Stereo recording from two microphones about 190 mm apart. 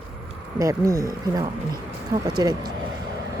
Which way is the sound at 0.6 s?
15° right (ahead or behind).